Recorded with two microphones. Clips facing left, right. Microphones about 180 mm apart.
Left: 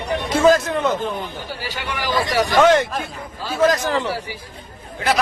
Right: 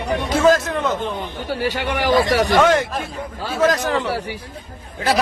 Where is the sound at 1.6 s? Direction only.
60° right (ahead or behind).